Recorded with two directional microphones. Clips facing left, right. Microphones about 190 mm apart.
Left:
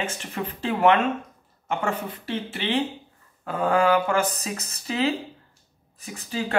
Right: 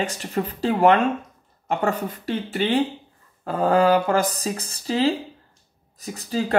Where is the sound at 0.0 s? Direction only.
35° right (ahead or behind).